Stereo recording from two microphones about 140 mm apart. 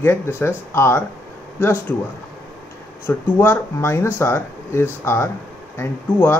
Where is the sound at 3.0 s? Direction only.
15° left (ahead or behind).